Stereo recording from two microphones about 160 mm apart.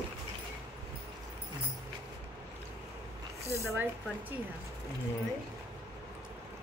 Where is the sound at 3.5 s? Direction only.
15° right (ahead or behind).